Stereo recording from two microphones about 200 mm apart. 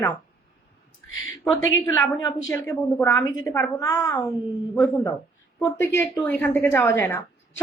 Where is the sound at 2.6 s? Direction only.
15° left (ahead or behind).